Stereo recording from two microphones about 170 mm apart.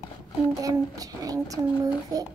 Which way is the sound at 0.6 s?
20° right (ahead or behind).